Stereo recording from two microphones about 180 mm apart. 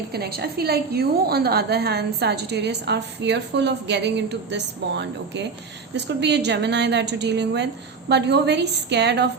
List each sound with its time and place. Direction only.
0.1 s a woman's voice: 60° right (ahead or behind)